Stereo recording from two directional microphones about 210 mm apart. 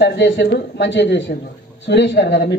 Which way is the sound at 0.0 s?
55° left (ahead or behind).